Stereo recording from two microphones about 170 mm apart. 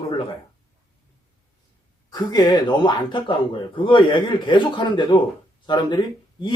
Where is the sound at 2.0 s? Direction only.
25° left (ahead or behind).